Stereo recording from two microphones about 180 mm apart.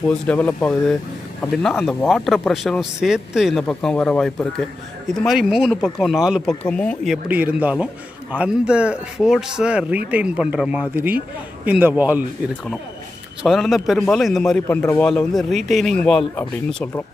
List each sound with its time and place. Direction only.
0.1 s speech: 10° left (ahead or behind)
7.2 s a man's voice: 10° right (ahead or behind)
13.4 s speech: centre (ahead or behind)